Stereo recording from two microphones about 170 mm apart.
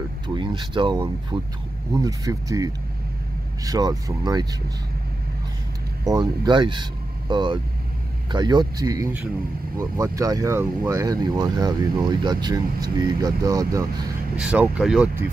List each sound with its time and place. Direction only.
0.3 s speech: 30° right (ahead or behind)
6.0 s speech: 25° right (ahead or behind)
14.3 s speech: 10° right (ahead or behind)